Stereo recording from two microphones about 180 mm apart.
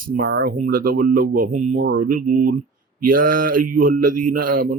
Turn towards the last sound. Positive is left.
turn(degrees=-50)  # may be behind; listen again after turning